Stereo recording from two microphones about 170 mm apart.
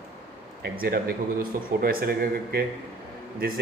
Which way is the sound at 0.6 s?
65° right (ahead or behind).